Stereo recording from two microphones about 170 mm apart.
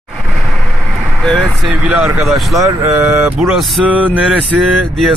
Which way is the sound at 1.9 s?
5° right (ahead or behind).